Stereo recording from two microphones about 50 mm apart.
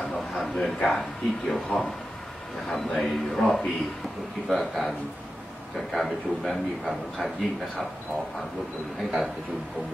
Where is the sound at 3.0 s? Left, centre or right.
Centre.